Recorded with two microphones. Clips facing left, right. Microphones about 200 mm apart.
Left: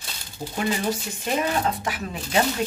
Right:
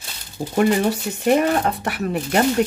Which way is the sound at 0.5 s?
60° right (ahead or behind).